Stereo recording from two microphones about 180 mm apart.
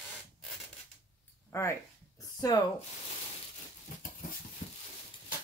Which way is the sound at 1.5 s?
15° left (ahead or behind).